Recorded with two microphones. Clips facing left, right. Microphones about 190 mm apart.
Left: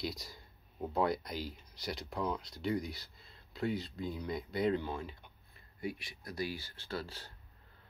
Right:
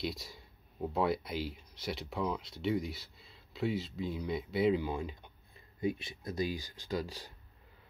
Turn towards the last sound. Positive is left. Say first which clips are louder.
# right 4 dB
turn(degrees=-15)  # may be behind; listen again after turning